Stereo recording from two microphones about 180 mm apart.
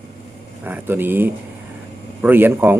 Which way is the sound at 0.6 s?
10° right (ahead or behind).